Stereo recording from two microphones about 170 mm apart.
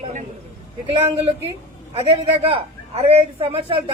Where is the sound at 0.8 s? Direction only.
35° right (ahead or behind).